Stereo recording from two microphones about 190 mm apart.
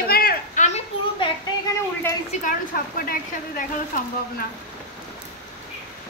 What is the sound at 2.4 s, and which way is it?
A woman's voice, 50° left (ahead or behind).